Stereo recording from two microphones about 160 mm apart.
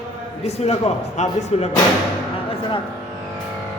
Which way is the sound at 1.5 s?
40° left (ahead or behind).